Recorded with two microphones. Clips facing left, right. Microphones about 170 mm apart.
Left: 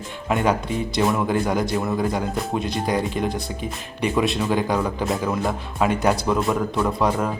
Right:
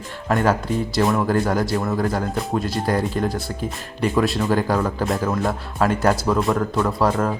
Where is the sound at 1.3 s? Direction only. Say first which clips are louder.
Right 2 dB; 15° left (ahead or behind).